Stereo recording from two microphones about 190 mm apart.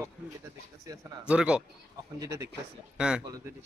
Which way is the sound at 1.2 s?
5° right (ahead or behind).